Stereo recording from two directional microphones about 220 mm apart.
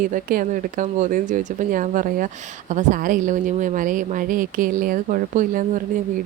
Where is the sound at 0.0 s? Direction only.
40° right (ahead or behind).